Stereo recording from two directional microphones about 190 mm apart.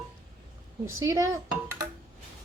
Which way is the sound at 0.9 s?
15° right (ahead or behind).